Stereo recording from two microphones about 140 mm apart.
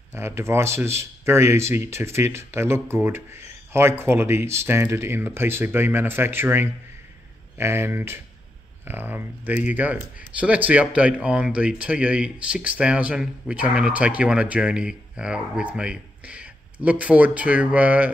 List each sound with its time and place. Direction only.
0.1 s speech: 20° right (ahead or behind)